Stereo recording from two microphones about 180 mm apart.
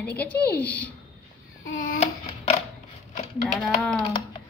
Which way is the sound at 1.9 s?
35° left (ahead or behind).